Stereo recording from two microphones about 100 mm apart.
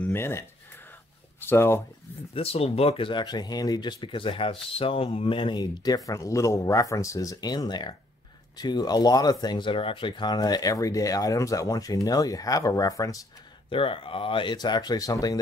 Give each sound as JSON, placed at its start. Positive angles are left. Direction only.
{"t": 0.0, "sound": "speech", "side_deg": 25}
{"t": 2.3, "sound": "speech", "side_deg": 75}
{"t": 13.7, "sound": "speech", "side_deg": 65}